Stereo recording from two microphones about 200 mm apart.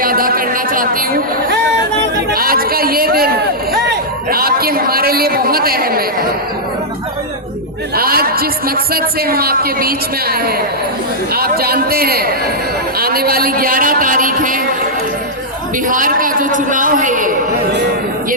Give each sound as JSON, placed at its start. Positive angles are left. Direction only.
{"t": 0.0, "sound": "a sound", "side_deg": -45}
{"t": 2.3, "sound": "a man's voice", "side_deg": -45}
{"t": 7.9, "sound": "a man's voice", "side_deg": -50}
{"t": 15.9, "sound": "a woman's voice", "side_deg": -40}